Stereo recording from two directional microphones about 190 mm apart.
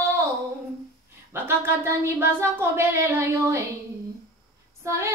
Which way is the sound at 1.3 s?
10° right (ahead or behind).